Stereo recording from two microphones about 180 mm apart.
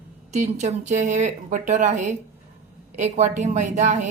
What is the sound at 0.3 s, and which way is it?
A woman's voice, 40° right (ahead or behind).